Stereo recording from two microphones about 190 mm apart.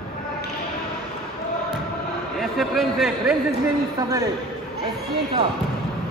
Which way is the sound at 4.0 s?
20° right (ahead or behind).